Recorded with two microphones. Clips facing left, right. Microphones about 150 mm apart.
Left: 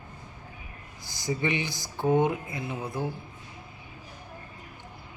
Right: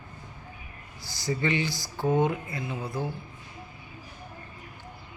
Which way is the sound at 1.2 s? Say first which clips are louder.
Right 1 dB; 15° left (ahead or behind).